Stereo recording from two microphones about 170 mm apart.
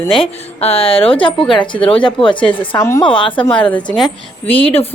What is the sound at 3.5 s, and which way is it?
Speech, 10° left (ahead or behind).